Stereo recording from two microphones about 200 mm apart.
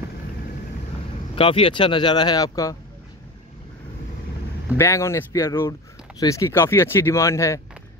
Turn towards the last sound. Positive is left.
turn(degrees=15)  # may be behind; listen again after turning